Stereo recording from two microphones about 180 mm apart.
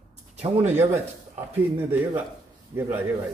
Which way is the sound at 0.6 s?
10° right (ahead or behind).